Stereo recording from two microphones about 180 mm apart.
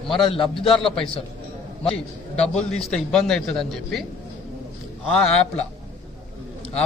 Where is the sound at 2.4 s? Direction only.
5° left (ahead or behind).